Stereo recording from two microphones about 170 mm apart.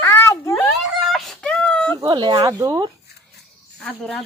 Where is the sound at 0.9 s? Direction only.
Centre (ahead or behind).